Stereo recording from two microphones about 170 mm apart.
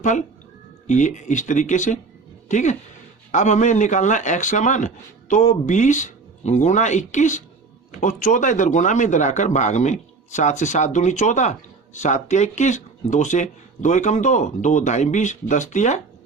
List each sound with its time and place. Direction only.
0.9 s speech: 45° left (ahead or behind)